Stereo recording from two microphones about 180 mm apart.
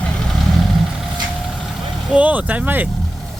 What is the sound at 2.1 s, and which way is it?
Speech, 10° right (ahead or behind).